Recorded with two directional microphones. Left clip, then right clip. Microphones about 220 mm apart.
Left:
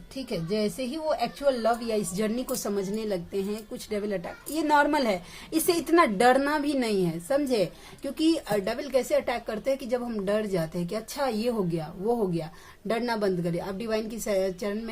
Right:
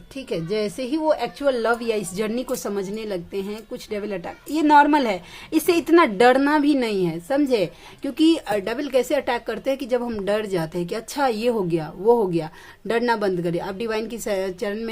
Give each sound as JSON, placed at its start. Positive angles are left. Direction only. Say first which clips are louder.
{"t": 0.3, "sound": "a woman's voice", "louder": "right 5 dB", "side_deg": -35}